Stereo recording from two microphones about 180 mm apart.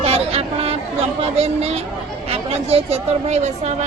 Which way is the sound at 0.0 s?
35° right (ahead or behind).